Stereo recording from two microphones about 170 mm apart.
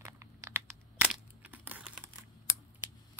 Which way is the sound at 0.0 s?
15° right (ahead or behind).